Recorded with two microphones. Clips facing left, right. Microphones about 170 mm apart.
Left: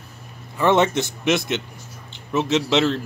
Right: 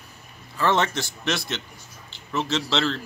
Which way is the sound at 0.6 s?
20° left (ahead or behind).